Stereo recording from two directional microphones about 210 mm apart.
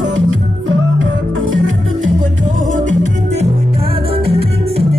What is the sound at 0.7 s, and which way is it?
Music, 65° right (ahead or behind).